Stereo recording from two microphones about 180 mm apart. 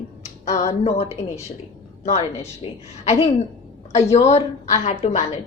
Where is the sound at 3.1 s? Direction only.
35° left (ahead or behind).